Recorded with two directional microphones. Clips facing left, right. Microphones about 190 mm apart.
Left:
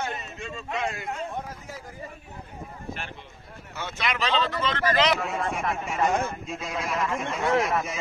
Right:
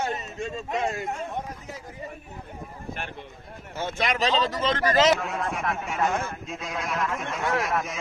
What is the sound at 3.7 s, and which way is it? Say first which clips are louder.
Speech: right 3 dB; 45° right (ahead or behind).